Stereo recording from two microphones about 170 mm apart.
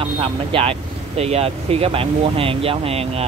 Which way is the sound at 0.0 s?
30° right (ahead or behind).